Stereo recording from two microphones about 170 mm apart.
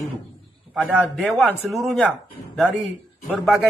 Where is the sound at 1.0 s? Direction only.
10° left (ahead or behind).